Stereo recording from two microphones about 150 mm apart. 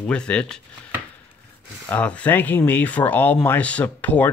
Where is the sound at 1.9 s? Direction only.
10° left (ahead or behind).